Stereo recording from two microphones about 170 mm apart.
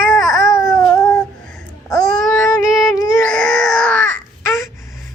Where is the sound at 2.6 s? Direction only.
20° left (ahead or behind).